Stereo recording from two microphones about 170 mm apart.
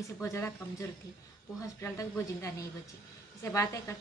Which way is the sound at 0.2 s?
15° left (ahead or behind).